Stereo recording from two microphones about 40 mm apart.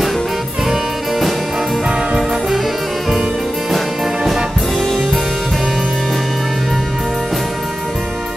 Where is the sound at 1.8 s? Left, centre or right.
Right.